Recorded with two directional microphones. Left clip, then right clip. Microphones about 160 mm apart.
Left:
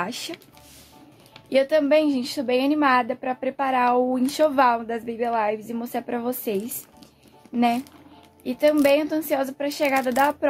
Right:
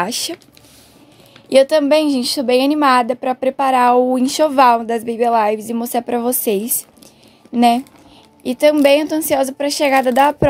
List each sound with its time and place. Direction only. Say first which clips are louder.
0.0 s speech: right 9 dB; 55° right (ahead or behind)
1.5 s a woman's voice: right 7 dB; 45° right (ahead or behind)